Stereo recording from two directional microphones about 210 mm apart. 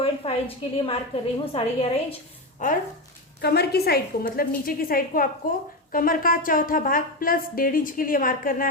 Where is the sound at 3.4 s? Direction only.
50° left (ahead or behind).